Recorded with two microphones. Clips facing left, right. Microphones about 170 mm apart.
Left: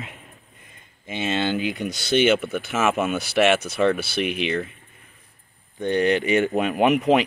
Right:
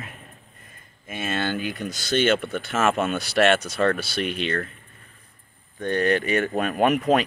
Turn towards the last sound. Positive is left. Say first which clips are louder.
# left 2 dB
turn(degrees=15)  # may be behind; listen again after turning